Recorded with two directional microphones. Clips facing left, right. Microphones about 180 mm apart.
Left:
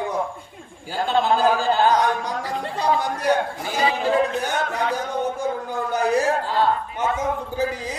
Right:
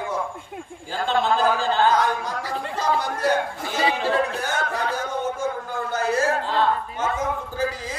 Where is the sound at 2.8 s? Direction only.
15° left (ahead or behind).